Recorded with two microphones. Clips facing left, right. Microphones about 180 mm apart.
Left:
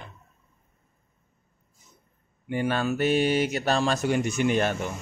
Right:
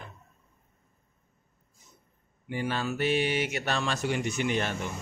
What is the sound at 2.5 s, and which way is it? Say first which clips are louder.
Speech: left 5 dB; 55° left (ahead or behind).